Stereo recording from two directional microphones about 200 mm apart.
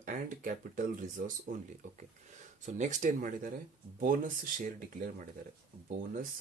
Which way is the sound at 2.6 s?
40° right (ahead or behind).